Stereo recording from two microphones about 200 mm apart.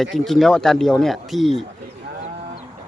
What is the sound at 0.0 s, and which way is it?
Speech, centre (ahead or behind).